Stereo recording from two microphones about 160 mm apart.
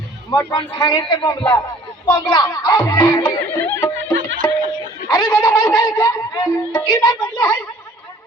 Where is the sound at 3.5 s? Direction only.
15° left (ahead or behind).